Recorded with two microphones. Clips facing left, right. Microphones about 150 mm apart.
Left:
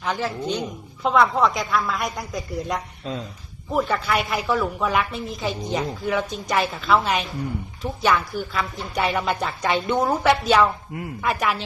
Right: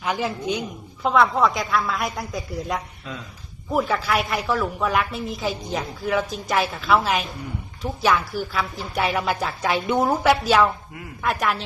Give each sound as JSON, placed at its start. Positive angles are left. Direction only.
{"t": 0.0, "sound": "a woman's voice", "side_deg": -10}
{"t": 3.1, "sound": "speech", "side_deg": 30}
{"t": 3.7, "sound": "a woman's voice", "side_deg": 0}